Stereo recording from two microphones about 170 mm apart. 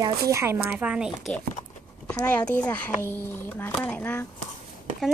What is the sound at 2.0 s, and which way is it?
A child's voice, 15° left (ahead or behind).